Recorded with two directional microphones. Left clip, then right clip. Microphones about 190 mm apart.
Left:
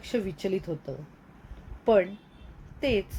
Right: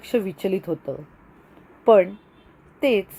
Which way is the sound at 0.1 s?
25° right (ahead or behind).